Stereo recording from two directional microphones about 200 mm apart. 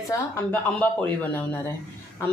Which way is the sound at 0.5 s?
10° left (ahead or behind).